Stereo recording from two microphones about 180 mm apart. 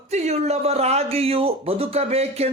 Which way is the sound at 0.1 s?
35° right (ahead or behind).